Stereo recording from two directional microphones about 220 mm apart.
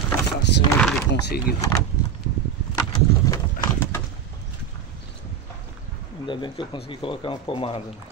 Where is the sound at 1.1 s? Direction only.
50° left (ahead or behind).